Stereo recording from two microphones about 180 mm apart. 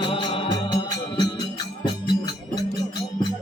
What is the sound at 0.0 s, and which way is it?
Music, 25° left (ahead or behind).